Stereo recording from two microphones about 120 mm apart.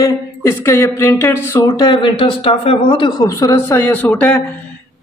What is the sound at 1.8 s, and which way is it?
Speech, 40° left (ahead or behind).